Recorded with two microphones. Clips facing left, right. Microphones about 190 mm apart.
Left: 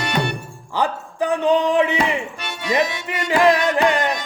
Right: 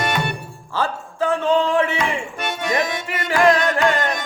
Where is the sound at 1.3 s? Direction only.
15° left (ahead or behind).